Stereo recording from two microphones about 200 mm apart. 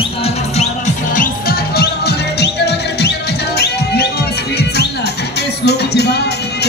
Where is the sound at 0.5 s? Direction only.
40° left (ahead or behind); by 3.1 s 55° left (ahead or behind).